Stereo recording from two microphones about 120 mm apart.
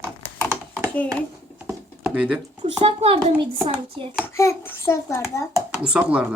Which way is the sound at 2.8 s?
55° right (ahead or behind).